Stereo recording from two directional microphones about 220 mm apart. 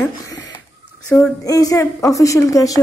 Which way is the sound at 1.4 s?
15° left (ahead or behind).